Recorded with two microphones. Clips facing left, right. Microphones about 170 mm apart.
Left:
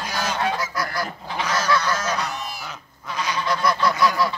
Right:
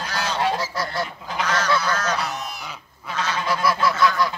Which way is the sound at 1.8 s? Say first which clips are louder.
Even; 10° left (ahead or behind).